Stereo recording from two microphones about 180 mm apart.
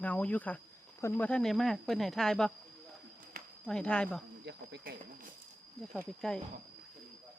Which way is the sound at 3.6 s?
5° left (ahead or behind).